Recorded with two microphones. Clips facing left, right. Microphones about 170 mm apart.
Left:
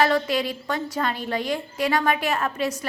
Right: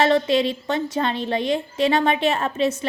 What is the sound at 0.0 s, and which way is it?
A woman's voice, 25° right (ahead or behind).